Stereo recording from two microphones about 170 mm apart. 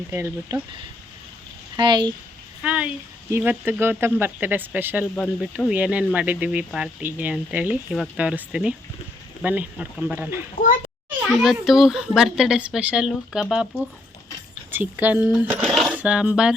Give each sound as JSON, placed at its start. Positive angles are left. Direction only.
{"t": 0.1, "sound": "speech", "side_deg": -15}
{"t": 1.7, "sound": "a child's voice", "side_deg": -25}
{"t": 2.6, "sound": "speech", "side_deg": -10}
{"t": 5.1, "sound": "speech", "side_deg": 5}
{"t": 5.5, "sound": "speech", "side_deg": -10}
{"t": 10.6, "sound": "a child's voice", "side_deg": 50}
{"t": 11.2, "sound": "speech", "side_deg": 0}
{"t": 14.7, "sound": "speech", "side_deg": -10}
{"t": 15.6, "sound": "cutlery", "side_deg": 0}